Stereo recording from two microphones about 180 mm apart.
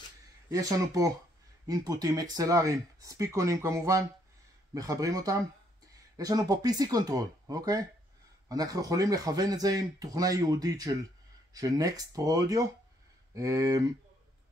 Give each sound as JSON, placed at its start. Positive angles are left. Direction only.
{"t": 0.5, "sound": "speech", "side_deg": -20}